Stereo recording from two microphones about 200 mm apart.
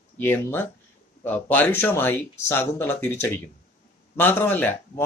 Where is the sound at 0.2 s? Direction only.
10° left (ahead or behind).